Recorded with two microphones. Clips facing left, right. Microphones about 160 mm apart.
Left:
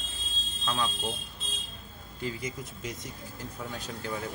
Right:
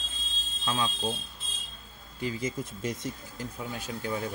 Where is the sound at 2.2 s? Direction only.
20° right (ahead or behind).